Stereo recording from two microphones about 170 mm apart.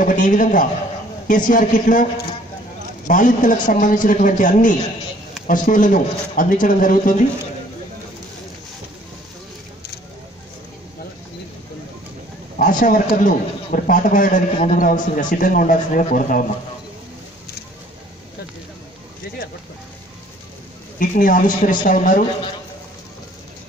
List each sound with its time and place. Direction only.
0.0 s a man's voice: 50° left (ahead or behind)
3.1 s a man's voice: 50° left (ahead or behind)
12.5 s a man's voice: 50° left (ahead or behind)
21.0 s a man's voice: 55° left (ahead or behind)